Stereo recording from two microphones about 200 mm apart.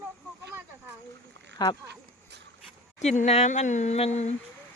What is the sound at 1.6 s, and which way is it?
Speech, 20° left (ahead or behind).